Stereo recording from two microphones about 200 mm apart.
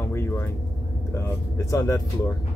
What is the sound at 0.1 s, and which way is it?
Vehicle, 10° left (ahead or behind).